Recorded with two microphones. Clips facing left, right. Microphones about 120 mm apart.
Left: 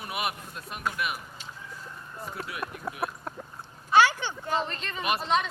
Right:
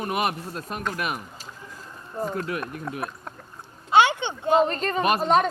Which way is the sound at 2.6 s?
5° left (ahead or behind).